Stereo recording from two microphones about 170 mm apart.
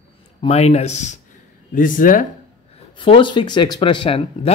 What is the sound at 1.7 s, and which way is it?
Speech, 50° left (ahead or behind).